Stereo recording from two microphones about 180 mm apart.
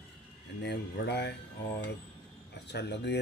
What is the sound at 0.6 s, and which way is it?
Speech, 70° left (ahead or behind).